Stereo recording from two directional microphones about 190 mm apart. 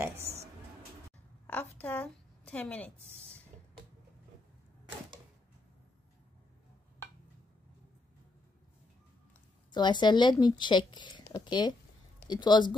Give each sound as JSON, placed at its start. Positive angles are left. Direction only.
{"t": 0.3, "sound": "music", "side_deg": -15}
{"t": 1.5, "sound": "a sound", "side_deg": 10}
{"t": 9.7, "sound": "speech", "side_deg": 25}